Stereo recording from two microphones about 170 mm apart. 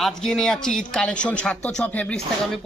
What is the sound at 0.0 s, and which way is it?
A man's voice, centre (ahead or behind).